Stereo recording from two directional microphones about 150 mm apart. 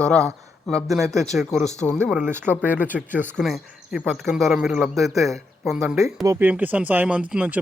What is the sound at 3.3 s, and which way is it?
Speech, centre (ahead or behind).